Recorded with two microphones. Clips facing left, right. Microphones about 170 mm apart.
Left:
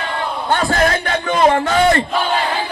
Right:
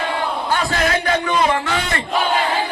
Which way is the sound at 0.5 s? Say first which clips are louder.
Left 4 dB; 50° left (ahead or behind).